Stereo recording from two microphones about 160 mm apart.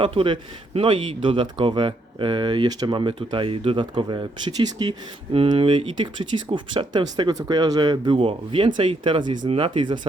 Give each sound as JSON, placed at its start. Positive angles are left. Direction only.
{"t": 0.0, "sound": "speech", "side_deg": -35}